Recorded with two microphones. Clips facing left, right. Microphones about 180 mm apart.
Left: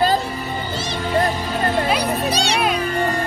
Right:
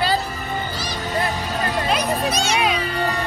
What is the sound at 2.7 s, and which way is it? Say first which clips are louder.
Music: left 2 dB; 45° left (ahead or behind).